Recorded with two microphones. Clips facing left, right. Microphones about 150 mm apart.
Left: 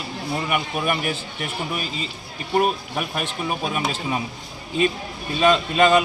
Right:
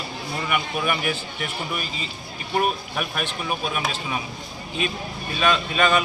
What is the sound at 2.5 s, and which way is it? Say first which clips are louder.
Speech: left 3 dB; 30° left (ahead or behind).